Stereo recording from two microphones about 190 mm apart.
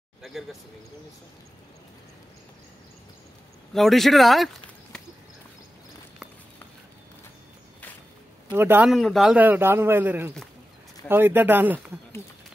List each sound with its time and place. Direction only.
0.2 s speech: centre (ahead or behind)
3.7 s speech: centre (ahead or behind)
8.5 s a man's voice: 10° right (ahead or behind)
8.9 s a man's voice: centre (ahead or behind)